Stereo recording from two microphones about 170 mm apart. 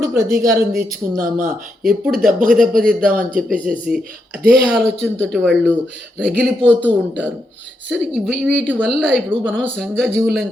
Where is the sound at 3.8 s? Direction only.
5° right (ahead or behind).